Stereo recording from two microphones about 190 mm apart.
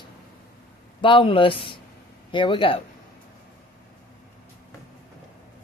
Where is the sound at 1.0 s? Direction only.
25° left (ahead or behind).